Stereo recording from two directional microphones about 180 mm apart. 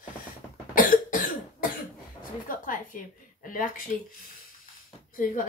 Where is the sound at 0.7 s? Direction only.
50° left (ahead or behind).